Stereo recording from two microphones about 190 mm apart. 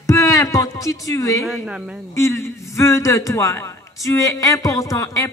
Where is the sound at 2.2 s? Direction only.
15° left (ahead or behind).